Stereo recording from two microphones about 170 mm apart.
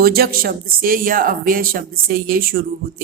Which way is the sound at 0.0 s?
65° right (ahead or behind).